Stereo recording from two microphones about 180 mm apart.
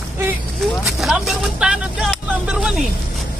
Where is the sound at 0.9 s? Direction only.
Centre (ahead or behind).